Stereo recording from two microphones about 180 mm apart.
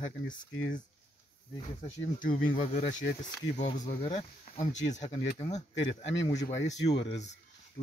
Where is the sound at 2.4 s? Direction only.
50° left (ahead or behind).